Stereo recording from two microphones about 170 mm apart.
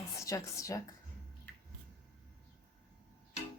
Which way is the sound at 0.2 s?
20° left (ahead or behind).